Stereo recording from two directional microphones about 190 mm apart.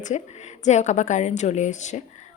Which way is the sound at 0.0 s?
40° left (ahead or behind).